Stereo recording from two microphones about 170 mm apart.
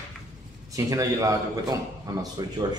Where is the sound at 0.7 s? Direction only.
20° right (ahead or behind).